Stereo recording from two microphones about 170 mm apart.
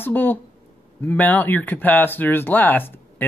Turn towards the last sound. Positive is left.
turn(degrees=10)  # may be behind; listen again after turning